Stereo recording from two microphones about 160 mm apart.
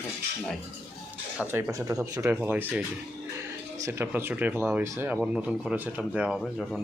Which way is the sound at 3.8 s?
15° right (ahead or behind).